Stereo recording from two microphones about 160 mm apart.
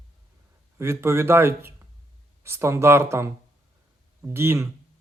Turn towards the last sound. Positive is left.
turn(degrees=-15)  # may be behind; listen again after turning